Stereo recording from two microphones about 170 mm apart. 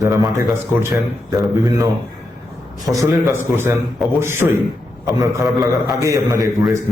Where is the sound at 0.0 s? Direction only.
20° right (ahead or behind).